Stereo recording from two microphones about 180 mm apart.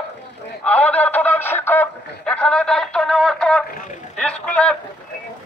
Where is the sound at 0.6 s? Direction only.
10° left (ahead or behind).